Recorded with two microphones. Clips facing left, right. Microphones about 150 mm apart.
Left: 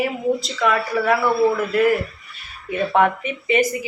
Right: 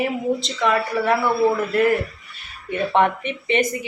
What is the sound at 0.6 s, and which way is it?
Speech, 25° right (ahead or behind).